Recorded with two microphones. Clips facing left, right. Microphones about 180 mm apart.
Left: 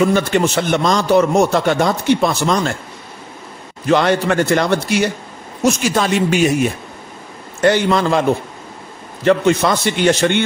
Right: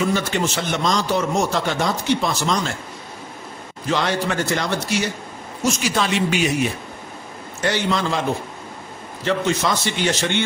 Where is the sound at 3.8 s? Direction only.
60° left (ahead or behind).